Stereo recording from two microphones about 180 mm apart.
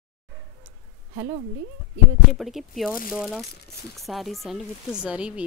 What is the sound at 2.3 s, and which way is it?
A woman's voice, centre (ahead or behind).